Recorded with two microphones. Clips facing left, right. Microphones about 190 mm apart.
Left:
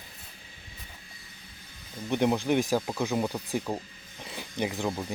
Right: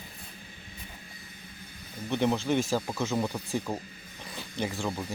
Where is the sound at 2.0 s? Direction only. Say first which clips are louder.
Left 2 dB; 15° left (ahead or behind).